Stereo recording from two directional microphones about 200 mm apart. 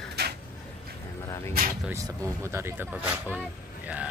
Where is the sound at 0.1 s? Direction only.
55° right (ahead or behind).